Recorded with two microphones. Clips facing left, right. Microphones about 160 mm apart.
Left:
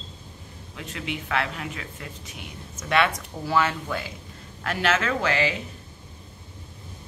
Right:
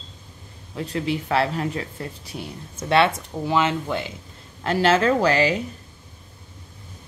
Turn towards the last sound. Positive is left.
turn(degrees=-40)  # may be behind; listen again after turning